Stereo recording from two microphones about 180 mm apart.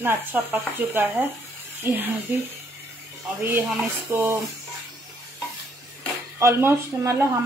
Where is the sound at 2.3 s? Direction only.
10° right (ahead or behind).